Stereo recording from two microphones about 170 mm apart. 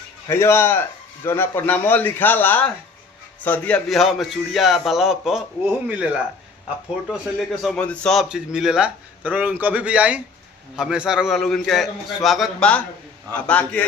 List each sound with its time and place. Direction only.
0.3 s a man's voice: 15° left (ahead or behind); by 5.4 s centre (ahead or behind)
7.1 s a man's voice: centre (ahead or behind)